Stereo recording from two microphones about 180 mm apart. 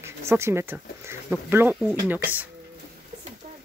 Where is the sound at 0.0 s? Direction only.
15° right (ahead or behind).